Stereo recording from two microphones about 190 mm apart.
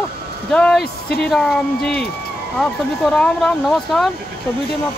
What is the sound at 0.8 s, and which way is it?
Speech, 55° left (ahead or behind).